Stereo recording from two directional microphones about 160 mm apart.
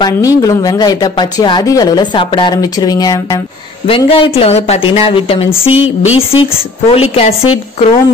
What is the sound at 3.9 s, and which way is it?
Speech, 35° left (ahead or behind).